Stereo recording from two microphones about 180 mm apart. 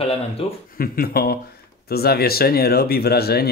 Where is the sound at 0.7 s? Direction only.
55° left (ahead or behind).